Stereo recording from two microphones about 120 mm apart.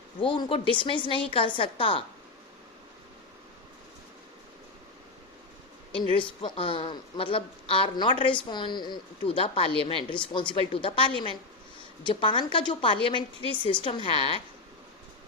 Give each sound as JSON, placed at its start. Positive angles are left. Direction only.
{"t": 0.2, "sound": "a woman's voice", "side_deg": 45}
{"t": 6.1, "sound": "a woman's voice", "side_deg": 45}